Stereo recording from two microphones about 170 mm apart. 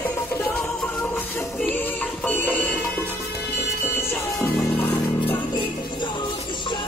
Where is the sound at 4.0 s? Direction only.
15° left (ahead or behind).